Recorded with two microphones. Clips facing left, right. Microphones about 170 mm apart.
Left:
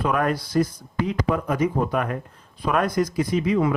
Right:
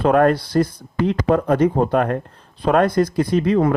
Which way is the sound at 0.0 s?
60° right (ahead or behind).